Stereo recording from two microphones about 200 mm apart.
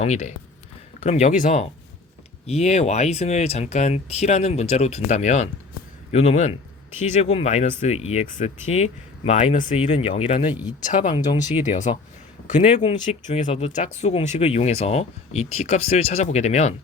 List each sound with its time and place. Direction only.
0.0 s speech: 35° left (ahead or behind)